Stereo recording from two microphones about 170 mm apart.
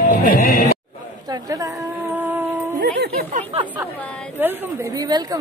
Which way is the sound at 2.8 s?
75° right (ahead or behind).